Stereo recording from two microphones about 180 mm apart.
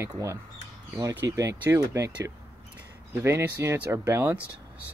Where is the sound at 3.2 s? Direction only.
15° right (ahead or behind).